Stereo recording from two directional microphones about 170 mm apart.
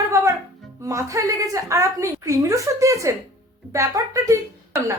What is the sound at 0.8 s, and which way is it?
A woman's voice, 20° right (ahead or behind).